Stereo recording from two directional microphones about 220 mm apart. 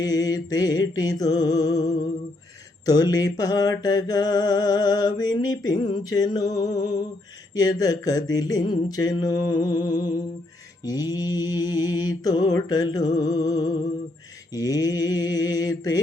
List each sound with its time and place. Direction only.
0.0 s mantra: 15° left (ahead or behind)